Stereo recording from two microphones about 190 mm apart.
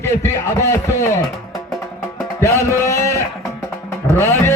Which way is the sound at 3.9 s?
15° left (ahead or behind).